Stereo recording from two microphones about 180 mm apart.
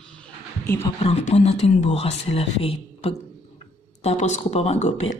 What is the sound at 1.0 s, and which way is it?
Speech, 35° left (ahead or behind).